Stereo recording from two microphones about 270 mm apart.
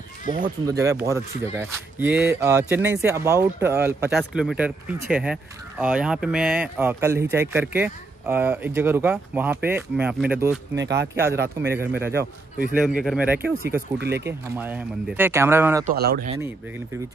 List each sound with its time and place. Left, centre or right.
0.7 s speech: centre
10.8 s speech: right
11.1 s speech: centre
13.9 s speech: right
14.6 s speech: centre
15.8 s speech: right